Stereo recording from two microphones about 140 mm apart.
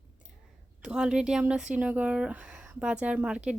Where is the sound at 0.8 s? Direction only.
5° right (ahead or behind).